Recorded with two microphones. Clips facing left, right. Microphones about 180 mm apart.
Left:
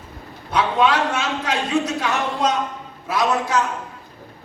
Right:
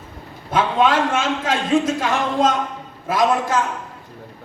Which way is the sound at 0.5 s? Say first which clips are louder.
Right 1 dB; 50° right (ahead or behind).